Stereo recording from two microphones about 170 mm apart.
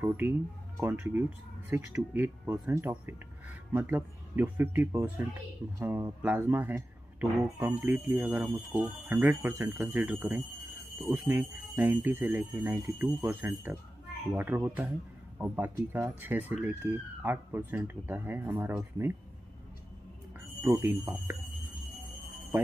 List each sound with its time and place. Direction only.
0.2 s speech: 10° right (ahead or behind)
20.6 s speech: 15° right (ahead or behind)